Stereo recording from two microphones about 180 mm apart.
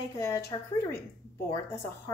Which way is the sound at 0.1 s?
15° left (ahead or behind).